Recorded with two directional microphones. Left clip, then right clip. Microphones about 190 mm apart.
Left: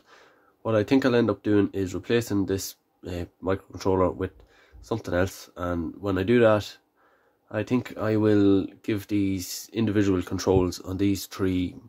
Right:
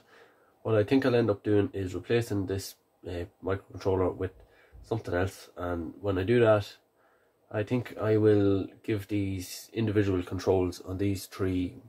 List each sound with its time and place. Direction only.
0.6 s speech: 50° left (ahead or behind)